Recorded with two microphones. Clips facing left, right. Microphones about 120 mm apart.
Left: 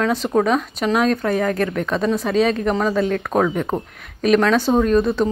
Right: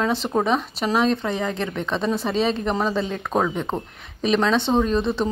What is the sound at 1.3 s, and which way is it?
Speech, 20° right (ahead or behind).